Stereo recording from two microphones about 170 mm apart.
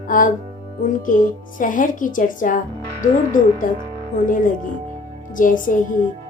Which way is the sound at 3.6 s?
50° left (ahead or behind).